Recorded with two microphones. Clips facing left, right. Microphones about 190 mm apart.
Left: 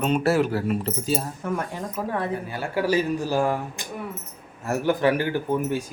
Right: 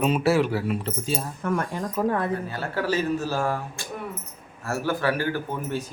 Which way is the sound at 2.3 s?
15° left (ahead or behind).